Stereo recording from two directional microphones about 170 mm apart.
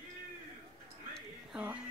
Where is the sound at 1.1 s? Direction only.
5° right (ahead or behind).